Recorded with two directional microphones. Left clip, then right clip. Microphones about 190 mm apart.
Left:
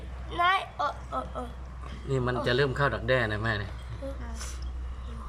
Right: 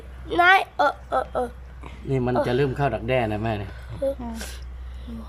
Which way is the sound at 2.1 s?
10° right (ahead or behind).